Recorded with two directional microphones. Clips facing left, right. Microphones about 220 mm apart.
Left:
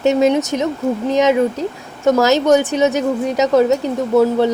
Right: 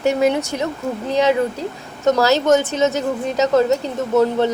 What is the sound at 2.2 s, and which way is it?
A woman's voice, 15° left (ahead or behind).